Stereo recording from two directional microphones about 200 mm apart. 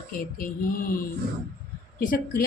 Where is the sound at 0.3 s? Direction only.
45° left (ahead or behind).